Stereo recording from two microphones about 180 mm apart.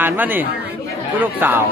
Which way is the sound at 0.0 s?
10° right (ahead or behind).